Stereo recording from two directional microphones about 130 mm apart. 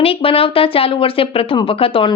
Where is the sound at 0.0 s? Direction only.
45° left (ahead or behind).